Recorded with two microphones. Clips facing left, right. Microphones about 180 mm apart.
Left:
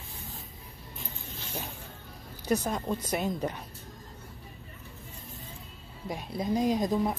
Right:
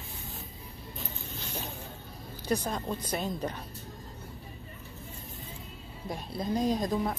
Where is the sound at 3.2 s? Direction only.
20° left (ahead or behind).